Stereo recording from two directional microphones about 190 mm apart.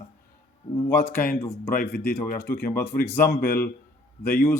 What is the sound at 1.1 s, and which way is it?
Speech, 50° left (ahead or behind).